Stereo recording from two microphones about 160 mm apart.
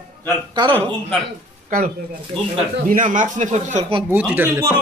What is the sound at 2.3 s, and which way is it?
Speech, 5° left (ahead or behind).